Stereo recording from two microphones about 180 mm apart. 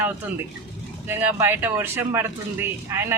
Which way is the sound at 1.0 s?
10° right (ahead or behind).